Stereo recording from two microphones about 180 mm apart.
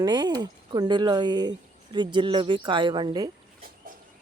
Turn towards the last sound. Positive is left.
turn(degrees=-25)  # may be behind; listen again after turning